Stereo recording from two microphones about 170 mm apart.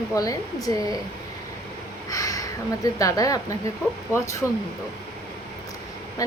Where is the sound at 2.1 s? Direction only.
20° left (ahead or behind).